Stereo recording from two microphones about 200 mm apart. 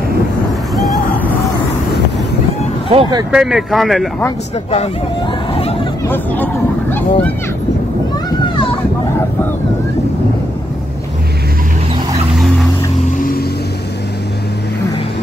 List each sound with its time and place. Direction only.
2.9 s speech: 25° right (ahead or behind)
3.3 s speech: 5° right (ahead or behind)
5.5 s hubbub: 30° left (ahead or behind)
6.0 s speech: 10° left (ahead or behind)
8.3 s a sound: 25° left (ahead or behind)
12.4 s vehicle: centre (ahead or behind)
13.0 s vehicle: 45° left (ahead or behind)